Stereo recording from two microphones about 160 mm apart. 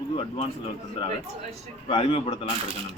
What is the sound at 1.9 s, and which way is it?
Speech, 35° left (ahead or behind).